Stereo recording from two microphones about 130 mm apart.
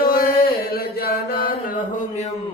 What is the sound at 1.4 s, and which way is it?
Mantra, 90° left.